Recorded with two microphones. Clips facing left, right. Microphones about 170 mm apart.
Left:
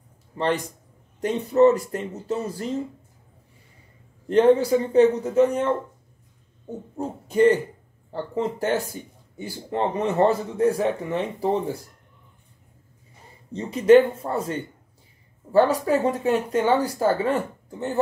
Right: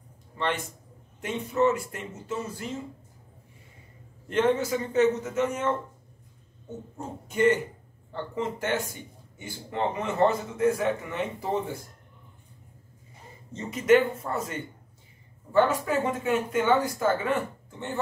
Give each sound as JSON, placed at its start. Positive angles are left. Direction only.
{"t": 1.2, "sound": "speech", "side_deg": 35}
{"t": 4.3, "sound": "speech", "side_deg": 35}
{"t": 7.0, "sound": "speech", "side_deg": 35}
{"t": 13.5, "sound": "speech", "side_deg": 30}